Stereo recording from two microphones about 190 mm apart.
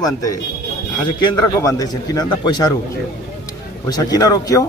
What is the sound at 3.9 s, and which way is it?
Speech, 20° left (ahead or behind).